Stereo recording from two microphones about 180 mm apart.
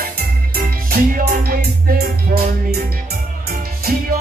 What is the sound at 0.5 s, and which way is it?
Music, 55° right (ahead or behind).